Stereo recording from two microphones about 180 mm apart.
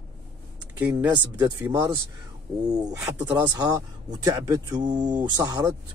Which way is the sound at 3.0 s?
20° right (ahead or behind).